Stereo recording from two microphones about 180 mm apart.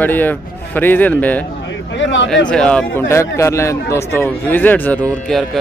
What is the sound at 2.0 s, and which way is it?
Speech, 90° left.